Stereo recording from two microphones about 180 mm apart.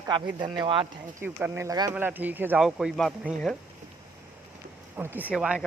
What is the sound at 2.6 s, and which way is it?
Speech, centre (ahead or behind).